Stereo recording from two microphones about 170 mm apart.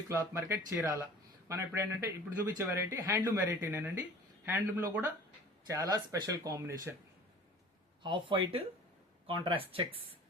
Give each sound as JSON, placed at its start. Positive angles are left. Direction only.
{"t": 0.1, "sound": "speech", "side_deg": -15}
{"t": 8.0, "sound": "speech", "side_deg": -30}